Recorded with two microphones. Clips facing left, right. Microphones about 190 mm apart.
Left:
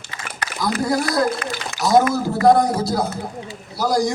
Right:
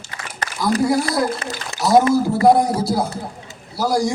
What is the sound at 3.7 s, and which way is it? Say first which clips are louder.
Speech: right 1 dB; 5° right (ahead or behind).